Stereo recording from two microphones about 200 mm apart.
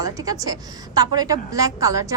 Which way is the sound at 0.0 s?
15° right (ahead or behind).